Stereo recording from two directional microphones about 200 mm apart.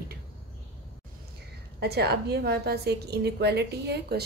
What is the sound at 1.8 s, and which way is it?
A woman's voice, 55° right (ahead or behind).